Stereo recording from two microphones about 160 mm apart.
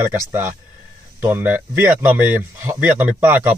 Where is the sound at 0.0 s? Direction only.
15° right (ahead or behind).